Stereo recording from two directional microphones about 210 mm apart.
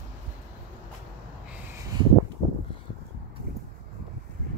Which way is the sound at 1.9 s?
20° right (ahead or behind).